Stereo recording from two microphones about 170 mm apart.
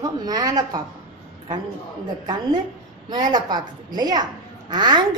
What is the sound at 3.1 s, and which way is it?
A child's voice, 25° right (ahead or behind).